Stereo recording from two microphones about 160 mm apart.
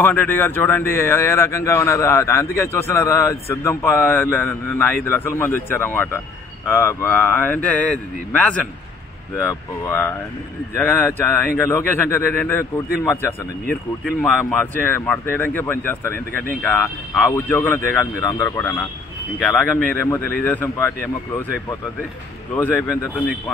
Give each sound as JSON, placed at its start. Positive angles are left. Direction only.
{"t": 0.0, "sound": "a man's voice", "side_deg": 10}